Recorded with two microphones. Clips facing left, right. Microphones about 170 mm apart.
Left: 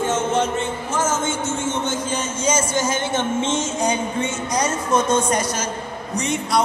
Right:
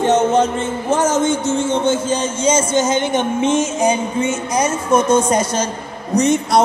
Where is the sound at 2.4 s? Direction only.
20° right (ahead or behind).